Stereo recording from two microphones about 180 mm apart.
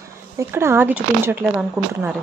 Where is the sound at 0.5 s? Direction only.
10° right (ahead or behind).